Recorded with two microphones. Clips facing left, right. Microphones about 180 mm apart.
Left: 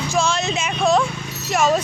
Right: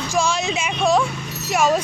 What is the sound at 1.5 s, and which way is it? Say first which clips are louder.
Speech: even; 10° right (ahead or behind).